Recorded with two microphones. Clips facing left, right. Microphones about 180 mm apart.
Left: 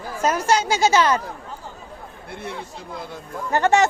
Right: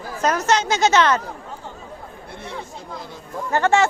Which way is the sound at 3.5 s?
15° left (ahead or behind).